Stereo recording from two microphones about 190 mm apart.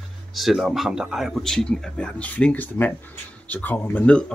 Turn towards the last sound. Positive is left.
turn(degrees=5)  # may be behind; listen again after turning